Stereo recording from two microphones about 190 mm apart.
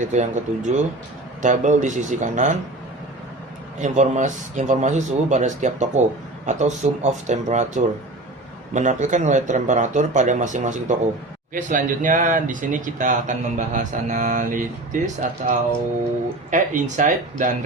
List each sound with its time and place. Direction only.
0.0 s speech: 40° right (ahead or behind)
3.8 s speech: 40° right (ahead or behind)